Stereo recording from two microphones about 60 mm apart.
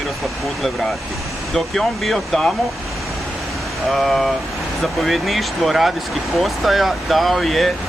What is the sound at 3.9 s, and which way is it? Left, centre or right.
Speech, centre.